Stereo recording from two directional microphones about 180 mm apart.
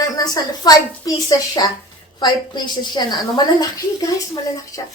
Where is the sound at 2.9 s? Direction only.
25° left (ahead or behind).